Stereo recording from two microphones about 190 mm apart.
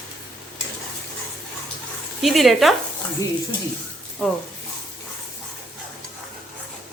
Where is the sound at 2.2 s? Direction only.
Centre (ahead or behind).